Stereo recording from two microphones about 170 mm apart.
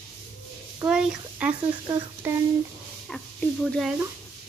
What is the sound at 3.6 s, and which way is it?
Speech, centre (ahead or behind).